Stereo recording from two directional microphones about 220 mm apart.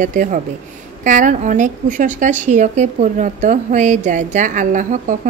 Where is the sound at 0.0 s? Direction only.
35° right (ahead or behind).